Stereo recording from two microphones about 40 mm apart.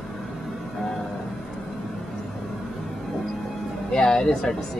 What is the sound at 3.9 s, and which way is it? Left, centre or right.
Speech, centre.